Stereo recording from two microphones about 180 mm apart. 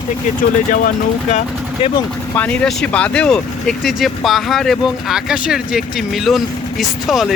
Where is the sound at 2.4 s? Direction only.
5° left (ahead or behind).